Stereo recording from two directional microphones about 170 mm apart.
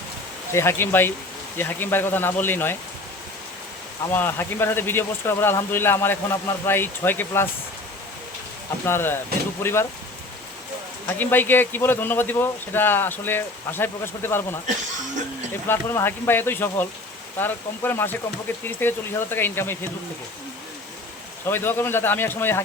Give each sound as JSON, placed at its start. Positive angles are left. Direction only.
{"t": 0.5, "sound": "speech", "side_deg": 15}
{"t": 4.1, "sound": "speech", "side_deg": 10}
{"t": 8.9, "sound": "speech", "side_deg": 15}
{"t": 11.2, "sound": "speech", "side_deg": 10}
{"t": 15.6, "sound": "speech", "side_deg": 15}
{"t": 21.4, "sound": "speech", "side_deg": 10}